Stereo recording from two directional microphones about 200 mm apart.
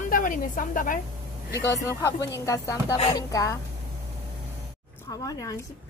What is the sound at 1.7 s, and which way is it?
Speech, 15° left (ahead or behind).